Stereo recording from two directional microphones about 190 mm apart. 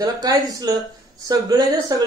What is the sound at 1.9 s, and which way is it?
Speech, 20° right (ahead or behind).